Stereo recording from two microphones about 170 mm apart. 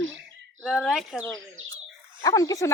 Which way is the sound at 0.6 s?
Centre (ahead or behind).